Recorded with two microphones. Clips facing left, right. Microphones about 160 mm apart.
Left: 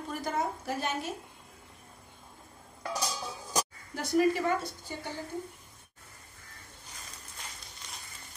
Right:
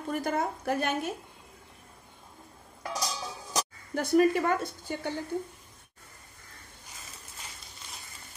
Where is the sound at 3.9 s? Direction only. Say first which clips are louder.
Right 3 dB; 60° right (ahead or behind).